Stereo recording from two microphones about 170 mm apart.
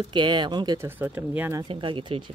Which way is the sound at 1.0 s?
10° right (ahead or behind).